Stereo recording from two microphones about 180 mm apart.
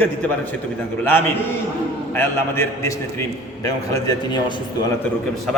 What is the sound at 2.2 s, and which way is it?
A man's voice, 15° left (ahead or behind).